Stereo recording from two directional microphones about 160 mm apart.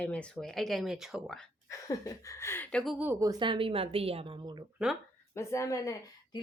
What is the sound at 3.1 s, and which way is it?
A woman's voice, 20° right (ahead or behind).